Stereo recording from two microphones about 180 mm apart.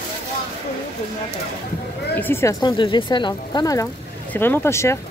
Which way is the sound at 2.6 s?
25° left (ahead or behind).